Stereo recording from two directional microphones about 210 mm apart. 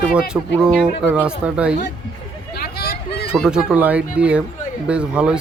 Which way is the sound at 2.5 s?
45° left (ahead or behind).